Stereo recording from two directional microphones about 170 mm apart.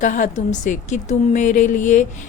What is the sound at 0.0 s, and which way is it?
A woman's voice, 45° left (ahead or behind).